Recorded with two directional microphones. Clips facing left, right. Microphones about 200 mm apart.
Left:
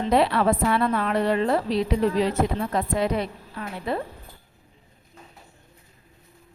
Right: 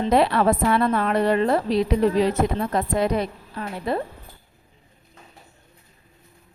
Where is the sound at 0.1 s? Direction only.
45° right (ahead or behind).